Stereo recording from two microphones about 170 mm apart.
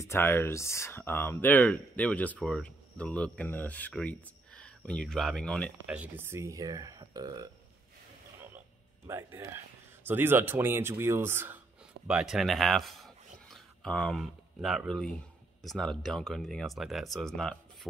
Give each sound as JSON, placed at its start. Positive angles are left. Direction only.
{"t": 0.0, "sound": "speech", "side_deg": 15}
{"t": 5.9, "sound": "speech", "side_deg": -10}
{"t": 8.5, "sound": "a sound", "side_deg": -15}
{"t": 10.0, "sound": "speech", "side_deg": -10}